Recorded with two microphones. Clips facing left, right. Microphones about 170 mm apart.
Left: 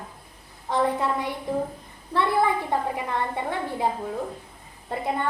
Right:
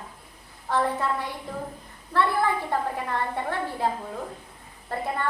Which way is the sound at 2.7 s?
15° left (ahead or behind).